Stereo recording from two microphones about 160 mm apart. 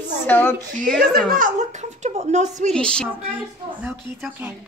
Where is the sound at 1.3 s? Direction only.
55° right (ahead or behind).